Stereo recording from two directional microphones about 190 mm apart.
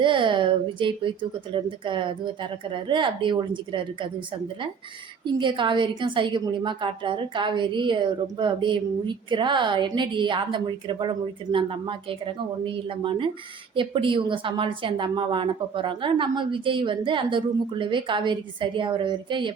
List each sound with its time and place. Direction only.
0.0 s a woman's voice: 25° right (ahead or behind)